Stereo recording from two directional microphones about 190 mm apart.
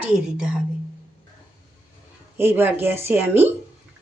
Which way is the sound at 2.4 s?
10° right (ahead or behind).